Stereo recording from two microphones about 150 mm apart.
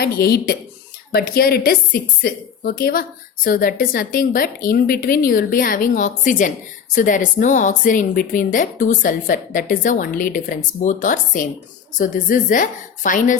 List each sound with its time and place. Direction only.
0.0 s a woman's voice: 90° left; by 13.3 s 60° left (ahead or behind)